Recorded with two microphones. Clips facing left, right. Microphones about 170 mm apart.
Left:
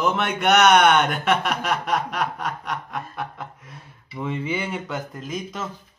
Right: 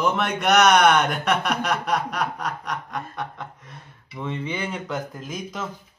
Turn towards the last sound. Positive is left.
turn(degrees=0)  # may be behind; listen again after turning